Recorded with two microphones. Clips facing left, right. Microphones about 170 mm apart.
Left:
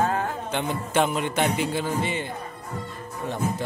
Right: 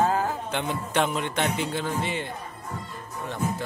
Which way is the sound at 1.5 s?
10° left (ahead or behind).